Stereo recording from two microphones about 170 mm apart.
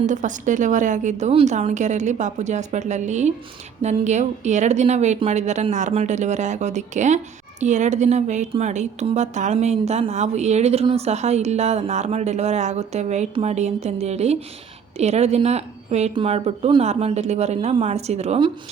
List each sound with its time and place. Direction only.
0.0 s a woman's voice: 45° right (ahead or behind)